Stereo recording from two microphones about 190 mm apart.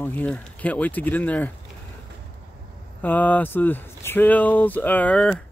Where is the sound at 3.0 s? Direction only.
10° left (ahead or behind).